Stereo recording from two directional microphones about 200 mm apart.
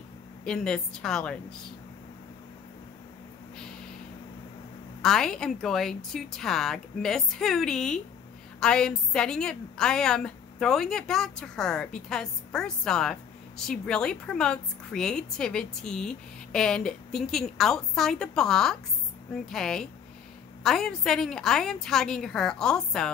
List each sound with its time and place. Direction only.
0.5 s a woman's voice: 5° left (ahead or behind)
5.0 s a woman's voice: 5° left (ahead or behind)